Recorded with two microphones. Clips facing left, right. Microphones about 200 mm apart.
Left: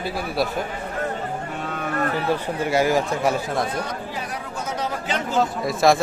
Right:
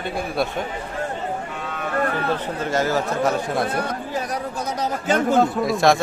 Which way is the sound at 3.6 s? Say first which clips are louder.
Right 2 dB; 55° right (ahead or behind).